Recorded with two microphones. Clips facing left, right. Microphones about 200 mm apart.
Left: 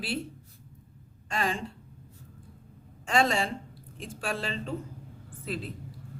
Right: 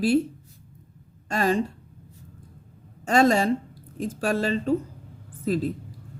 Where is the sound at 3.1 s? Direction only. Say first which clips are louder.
Right 7 dB; 40° right (ahead or behind).